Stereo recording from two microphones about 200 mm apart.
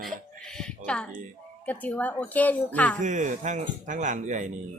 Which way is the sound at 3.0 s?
40° right (ahead or behind).